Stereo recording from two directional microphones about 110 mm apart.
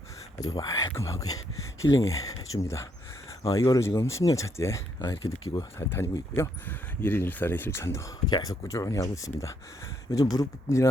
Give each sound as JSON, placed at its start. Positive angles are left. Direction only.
{"t": 0.3, "sound": "speech", "side_deg": 35}
{"t": 8.3, "sound": "speech", "side_deg": 35}